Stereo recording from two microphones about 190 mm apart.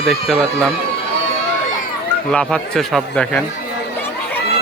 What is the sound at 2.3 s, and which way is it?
Speech, 5° left (ahead or behind).